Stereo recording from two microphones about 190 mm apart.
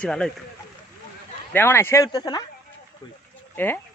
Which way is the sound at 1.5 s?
10° left (ahead or behind).